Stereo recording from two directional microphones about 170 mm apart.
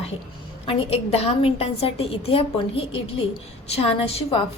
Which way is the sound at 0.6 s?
35° left (ahead or behind).